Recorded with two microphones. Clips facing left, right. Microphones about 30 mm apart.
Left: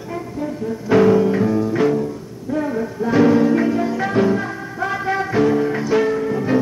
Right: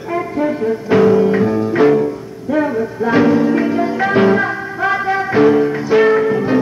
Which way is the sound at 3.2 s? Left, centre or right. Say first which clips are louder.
Left 1 dB; centre.